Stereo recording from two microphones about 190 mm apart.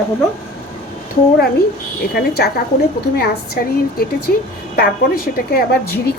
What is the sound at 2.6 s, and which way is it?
Speech, 50° left (ahead or behind).